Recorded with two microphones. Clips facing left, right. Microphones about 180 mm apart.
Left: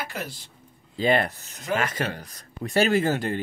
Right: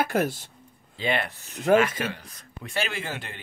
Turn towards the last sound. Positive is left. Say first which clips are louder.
# left 12 dB
turn(degrees=40)  # may be behind; listen again after turning